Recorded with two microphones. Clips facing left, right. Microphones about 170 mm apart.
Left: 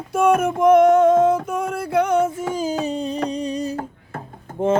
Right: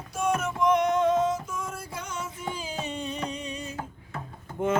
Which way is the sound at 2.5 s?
40° left (ahead or behind).